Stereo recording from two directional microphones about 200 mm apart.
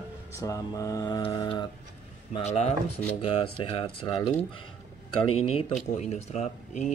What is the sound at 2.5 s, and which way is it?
Speech, 35° left (ahead or behind).